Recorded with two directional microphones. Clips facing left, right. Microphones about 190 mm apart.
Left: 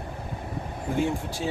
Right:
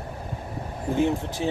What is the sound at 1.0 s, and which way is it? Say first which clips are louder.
Speech: right 3 dB; 20° right (ahead or behind).